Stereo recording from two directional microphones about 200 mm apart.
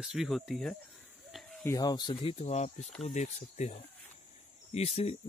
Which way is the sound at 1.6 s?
15° left (ahead or behind).